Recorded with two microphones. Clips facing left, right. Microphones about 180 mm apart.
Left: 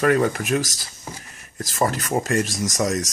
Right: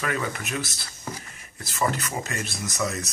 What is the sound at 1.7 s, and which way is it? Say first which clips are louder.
Speech: left 5 dB; 45° left (ahead or behind).